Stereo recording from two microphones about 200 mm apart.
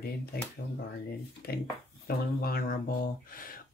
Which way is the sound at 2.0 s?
50° left (ahead or behind).